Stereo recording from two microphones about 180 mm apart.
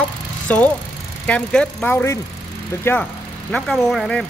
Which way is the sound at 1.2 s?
5° left (ahead or behind).